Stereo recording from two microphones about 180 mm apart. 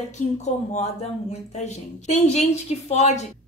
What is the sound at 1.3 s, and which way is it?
A woman's voice, 40° left (ahead or behind).